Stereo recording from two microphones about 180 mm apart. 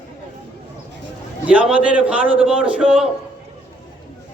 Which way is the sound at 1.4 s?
5° right (ahead or behind).